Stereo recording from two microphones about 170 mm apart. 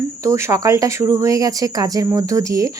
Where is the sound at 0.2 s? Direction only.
15° right (ahead or behind).